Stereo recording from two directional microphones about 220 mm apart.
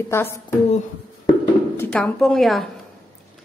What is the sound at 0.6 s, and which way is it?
Speech, 30° left (ahead or behind).